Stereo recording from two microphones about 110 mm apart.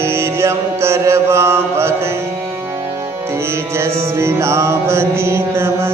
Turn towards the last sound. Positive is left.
turn(degrees=-25)  # may be behind; listen again after turning